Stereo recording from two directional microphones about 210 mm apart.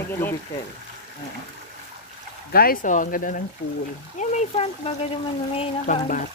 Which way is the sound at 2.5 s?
45° left (ahead or behind).